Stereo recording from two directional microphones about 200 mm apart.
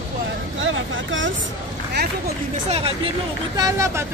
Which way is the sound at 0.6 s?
75° right (ahead or behind).